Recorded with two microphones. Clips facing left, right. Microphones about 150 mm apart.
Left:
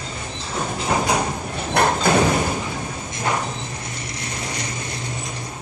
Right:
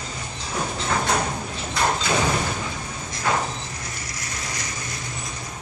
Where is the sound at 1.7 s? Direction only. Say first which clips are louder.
Left 5 dB; 55° left (ahead or behind).